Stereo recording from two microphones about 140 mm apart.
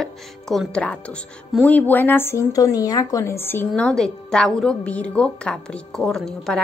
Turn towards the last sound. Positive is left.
turn(degrees=5)  # may be behind; listen again after turning